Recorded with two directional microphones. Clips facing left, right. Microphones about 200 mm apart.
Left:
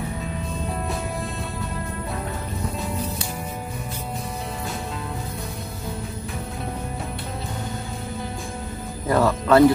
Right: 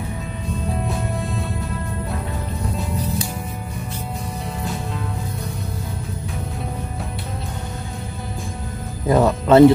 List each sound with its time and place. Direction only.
9.1 s music: 20° right (ahead or behind)